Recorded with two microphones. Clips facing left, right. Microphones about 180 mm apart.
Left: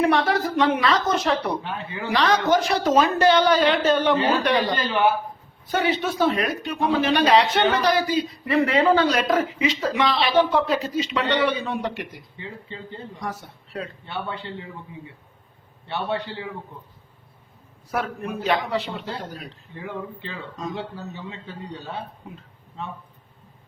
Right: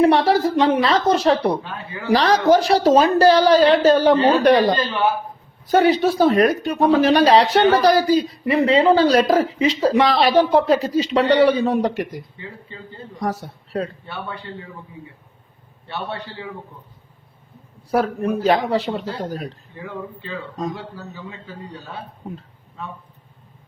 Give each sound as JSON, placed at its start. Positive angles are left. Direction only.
{"t": 0.0, "sound": "speech", "side_deg": -35}
{"t": 8.4, "sound": "speech", "side_deg": -25}
{"t": 12.4, "sound": "a man's voice", "side_deg": 20}
{"t": 13.1, "sound": "speech", "side_deg": -40}
{"t": 14.1, "sound": "a man's voice", "side_deg": 20}
{"t": 16.0, "sound": "a man's voice", "side_deg": 20}
{"t": 17.9, "sound": "speech", "side_deg": -35}
{"t": 20.7, "sound": "a man's voice", "side_deg": 25}